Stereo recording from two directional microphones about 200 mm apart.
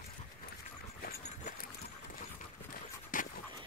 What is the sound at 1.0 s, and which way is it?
Dog, 45° left (ahead or behind).